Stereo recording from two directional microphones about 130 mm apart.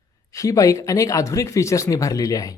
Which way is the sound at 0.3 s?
25° left (ahead or behind).